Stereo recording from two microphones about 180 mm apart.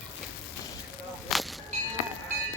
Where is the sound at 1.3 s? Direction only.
Centre (ahead or behind).